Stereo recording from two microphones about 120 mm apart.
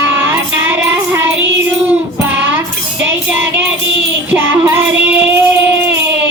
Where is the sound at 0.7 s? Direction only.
20° right (ahead or behind).